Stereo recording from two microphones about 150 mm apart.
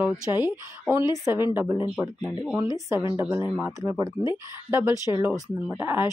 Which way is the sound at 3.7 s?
20° right (ahead or behind).